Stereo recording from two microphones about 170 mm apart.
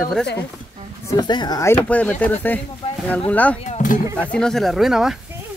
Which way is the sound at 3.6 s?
50° left (ahead or behind).